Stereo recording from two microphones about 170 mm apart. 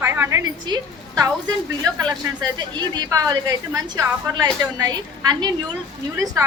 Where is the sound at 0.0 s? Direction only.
15° right (ahead or behind).